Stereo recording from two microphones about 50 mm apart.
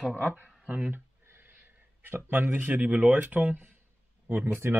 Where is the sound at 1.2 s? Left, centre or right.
Right.